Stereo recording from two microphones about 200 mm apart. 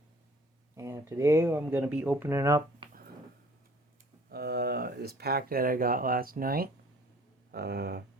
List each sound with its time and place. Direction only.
0.8 s speech: 15° right (ahead or behind)
4.3 s speech: 50° right (ahead or behind)